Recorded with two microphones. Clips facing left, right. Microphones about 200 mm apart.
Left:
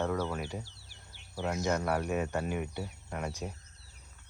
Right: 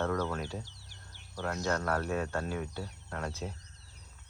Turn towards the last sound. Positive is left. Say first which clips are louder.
# left 1 dB
turn(degrees=10)  # may be behind; listen again after turning